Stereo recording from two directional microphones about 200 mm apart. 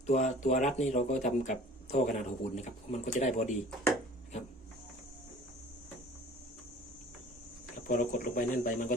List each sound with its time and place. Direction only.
0.1 s speech: 35° left (ahead or behind)
7.9 s speech: 40° left (ahead or behind)